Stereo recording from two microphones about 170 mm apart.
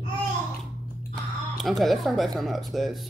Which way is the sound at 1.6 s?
Centre (ahead or behind).